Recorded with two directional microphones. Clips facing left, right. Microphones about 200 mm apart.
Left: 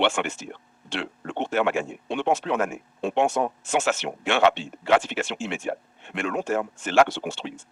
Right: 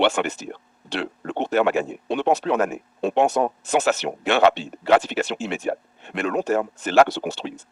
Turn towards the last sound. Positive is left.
turn(degrees=-40)  # may be behind; listen again after turning